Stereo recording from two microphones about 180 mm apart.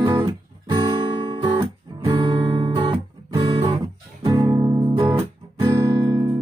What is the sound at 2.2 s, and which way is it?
Music, 25° right (ahead or behind).